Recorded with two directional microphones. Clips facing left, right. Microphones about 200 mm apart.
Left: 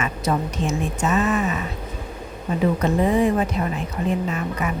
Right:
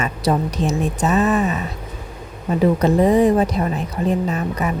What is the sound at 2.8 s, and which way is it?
A woman's voice, 35° right (ahead or behind).